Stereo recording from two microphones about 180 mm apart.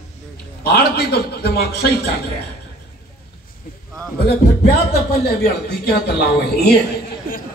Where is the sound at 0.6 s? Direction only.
60° left (ahead or behind).